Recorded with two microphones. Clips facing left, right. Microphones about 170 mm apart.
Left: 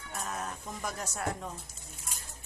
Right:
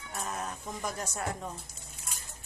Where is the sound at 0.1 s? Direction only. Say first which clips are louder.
Right 1 dB; centre (ahead or behind).